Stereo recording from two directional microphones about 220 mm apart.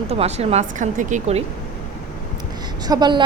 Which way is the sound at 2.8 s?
20° right (ahead or behind).